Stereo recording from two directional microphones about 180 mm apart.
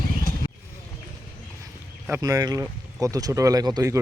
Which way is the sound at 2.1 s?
20° right (ahead or behind).